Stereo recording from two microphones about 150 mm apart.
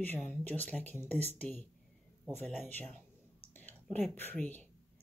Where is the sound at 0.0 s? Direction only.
10° left (ahead or behind).